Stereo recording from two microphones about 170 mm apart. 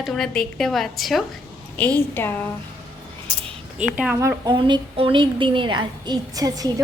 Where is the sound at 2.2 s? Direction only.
10° left (ahead or behind).